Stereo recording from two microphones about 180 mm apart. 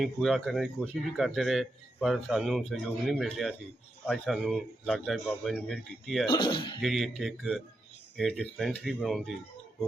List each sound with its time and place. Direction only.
0.0 s speech: centre (ahead or behind)
6.2 s speech: 25° left (ahead or behind)
6.8 s speech: centre (ahead or behind)